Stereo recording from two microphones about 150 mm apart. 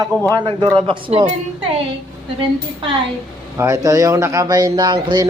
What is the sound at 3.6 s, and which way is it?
A man's voice, 20° right (ahead or behind).